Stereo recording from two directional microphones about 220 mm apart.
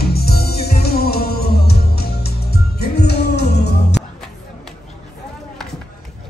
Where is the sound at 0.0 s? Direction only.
45° left (ahead or behind).